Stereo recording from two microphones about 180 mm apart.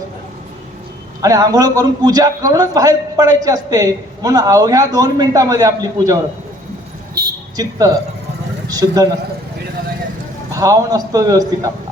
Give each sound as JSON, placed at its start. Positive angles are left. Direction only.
{"t": 1.2, "sound": "a man's voice", "side_deg": -20}
{"t": 7.5, "sound": "a woman's voice", "side_deg": -20}
{"t": 10.5, "sound": "a man's voice", "side_deg": -20}